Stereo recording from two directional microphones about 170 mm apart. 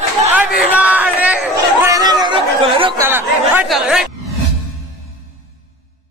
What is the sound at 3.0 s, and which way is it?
Chatter, 10° right (ahead or behind).